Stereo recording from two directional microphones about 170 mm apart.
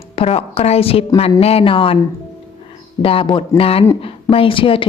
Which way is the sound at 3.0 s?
30° left (ahead or behind).